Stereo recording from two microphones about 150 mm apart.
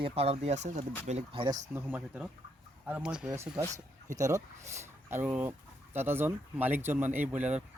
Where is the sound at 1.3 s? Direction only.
35° right (ahead or behind).